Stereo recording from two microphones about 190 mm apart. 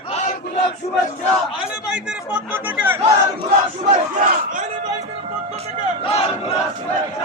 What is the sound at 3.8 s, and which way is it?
Battle cry, 45° right (ahead or behind).